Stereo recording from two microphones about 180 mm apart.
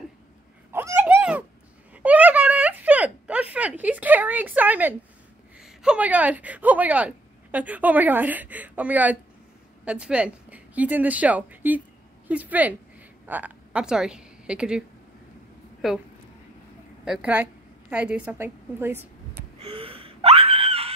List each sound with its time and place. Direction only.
0.7 s a sound: 15° right (ahead or behind)
5.6 s a woman's voice: 5° right (ahead or behind)
17.0 s a woman's voice: 5° right (ahead or behind)
19.6 s gasp: 30° right (ahead or behind)